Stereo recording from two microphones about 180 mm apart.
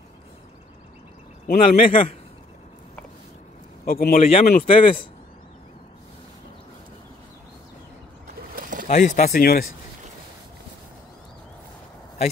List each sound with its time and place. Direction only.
1.6 s speech: 40° left (ahead or behind)
3.8 s a man's voice: 55° left (ahead or behind)
4.2 s a man's voice: 35° left (ahead or behind)
8.5 s bird: 50° right (ahead or behind)
8.8 s speech: 40° left (ahead or behind)
9.3 s a man's voice: 55° left (ahead or behind)